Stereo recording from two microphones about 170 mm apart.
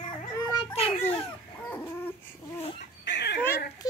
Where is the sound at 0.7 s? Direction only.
35° left (ahead or behind).